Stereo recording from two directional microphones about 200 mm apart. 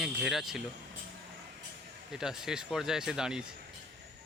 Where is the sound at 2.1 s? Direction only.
5° right (ahead or behind).